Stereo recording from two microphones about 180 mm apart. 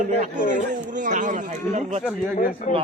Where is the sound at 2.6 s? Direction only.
40° left (ahead or behind).